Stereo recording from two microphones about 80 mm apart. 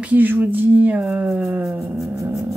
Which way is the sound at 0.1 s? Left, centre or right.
Right.